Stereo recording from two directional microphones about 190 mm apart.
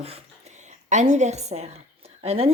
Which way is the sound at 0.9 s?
40° right (ahead or behind).